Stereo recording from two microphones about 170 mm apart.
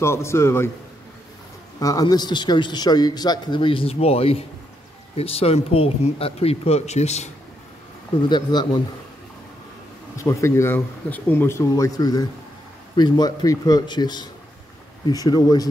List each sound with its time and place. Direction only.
0.0 s speech: 15° left (ahead or behind)
1.8 s a man's voice: 20° left (ahead or behind); by 7.2 s 40° left (ahead or behind)
8.3 s a man's voice: 25° left (ahead or behind)
10.1 s a man's voice: 15° left (ahead or behind)